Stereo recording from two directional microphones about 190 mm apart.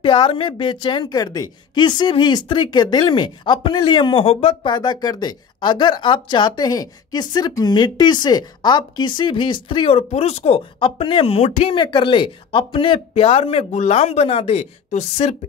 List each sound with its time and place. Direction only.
0.0 s a woman's voice: 25° left (ahead or behind)